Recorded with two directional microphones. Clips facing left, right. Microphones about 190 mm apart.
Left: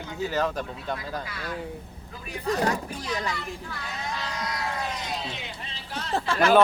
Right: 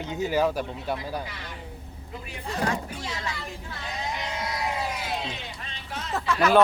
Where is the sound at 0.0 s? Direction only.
20° right (ahead or behind).